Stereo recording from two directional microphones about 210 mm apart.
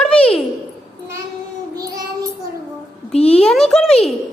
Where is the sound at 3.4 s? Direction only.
5° left (ahead or behind).